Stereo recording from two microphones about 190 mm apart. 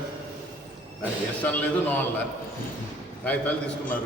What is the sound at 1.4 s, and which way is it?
Speech, 10° left (ahead or behind).